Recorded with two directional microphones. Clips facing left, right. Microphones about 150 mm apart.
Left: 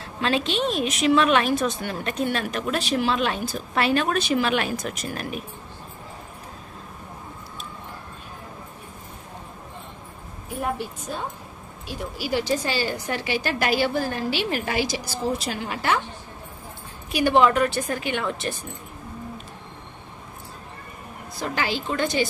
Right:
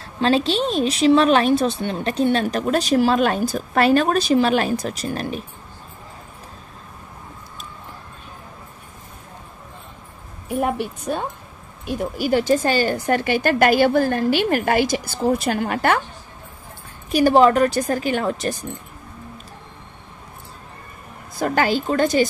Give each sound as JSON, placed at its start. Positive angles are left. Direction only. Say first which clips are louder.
{"t": 0.0, "sound": "a woman's voice", "louder": "right 6 dB", "side_deg": -35}
{"t": 10.6, "sound": "a woman's voice", "louder": "right 5 dB", "side_deg": -65}
{"t": 17.1, "sound": "a woman's voice", "louder": "right 5 dB", "side_deg": -40}
{"t": 21.4, "sound": "a woman's voice", "louder": "right 7 dB", "side_deg": -50}